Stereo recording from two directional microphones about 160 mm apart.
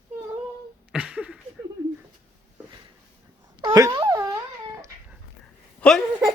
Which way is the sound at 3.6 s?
25° right (ahead or behind).